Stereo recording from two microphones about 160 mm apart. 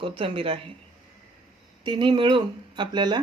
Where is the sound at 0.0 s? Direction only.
35° right (ahead or behind).